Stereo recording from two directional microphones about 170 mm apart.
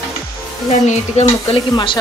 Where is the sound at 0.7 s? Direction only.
40° left (ahead or behind).